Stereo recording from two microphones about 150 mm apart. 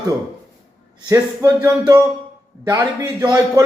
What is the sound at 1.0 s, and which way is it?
A man's voice, 20° right (ahead or behind).